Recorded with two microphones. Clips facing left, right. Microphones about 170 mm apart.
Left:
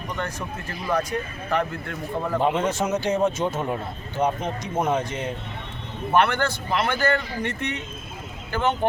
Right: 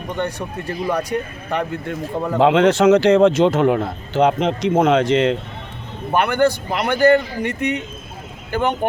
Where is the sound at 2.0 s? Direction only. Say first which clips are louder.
Right 7 dB; 90° right.